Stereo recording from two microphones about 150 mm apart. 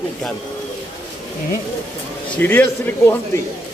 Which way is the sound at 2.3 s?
15° left (ahead or behind).